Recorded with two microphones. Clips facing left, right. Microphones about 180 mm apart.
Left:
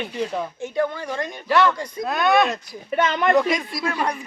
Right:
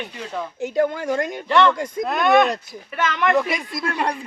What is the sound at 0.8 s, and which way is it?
Speech, 45° right (ahead or behind).